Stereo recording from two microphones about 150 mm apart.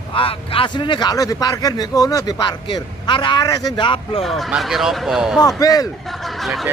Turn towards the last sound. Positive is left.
turn(degrees=0)  # may be behind; listen again after turning